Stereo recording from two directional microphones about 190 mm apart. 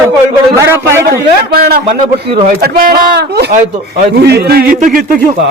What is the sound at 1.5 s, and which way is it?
Speech, 55° right (ahead or behind).